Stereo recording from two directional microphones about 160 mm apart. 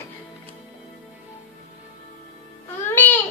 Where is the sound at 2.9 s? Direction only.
10° left (ahead or behind).